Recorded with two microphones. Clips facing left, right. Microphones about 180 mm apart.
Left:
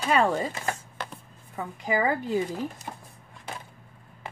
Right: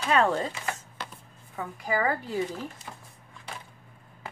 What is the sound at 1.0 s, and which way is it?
Chopping, 55° left (ahead or behind).